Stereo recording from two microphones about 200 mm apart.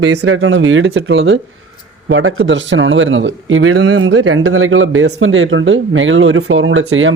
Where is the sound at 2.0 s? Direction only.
90° right.